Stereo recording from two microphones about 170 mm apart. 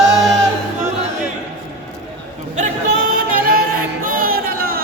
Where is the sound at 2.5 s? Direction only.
55° right (ahead or behind).